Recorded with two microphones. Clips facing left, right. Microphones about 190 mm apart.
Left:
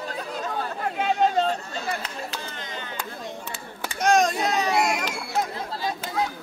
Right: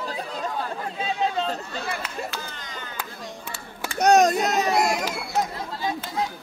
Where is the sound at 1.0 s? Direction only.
55° left (ahead or behind).